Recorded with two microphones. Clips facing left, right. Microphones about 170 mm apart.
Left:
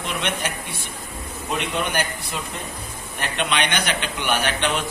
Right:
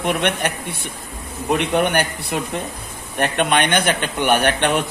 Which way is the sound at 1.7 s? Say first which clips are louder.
Right 7 dB; 60° right (ahead or behind).